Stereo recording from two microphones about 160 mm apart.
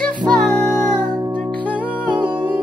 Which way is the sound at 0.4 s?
5° left (ahead or behind).